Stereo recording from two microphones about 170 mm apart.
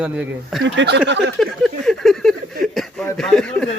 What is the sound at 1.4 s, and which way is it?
Speech, centre (ahead or behind).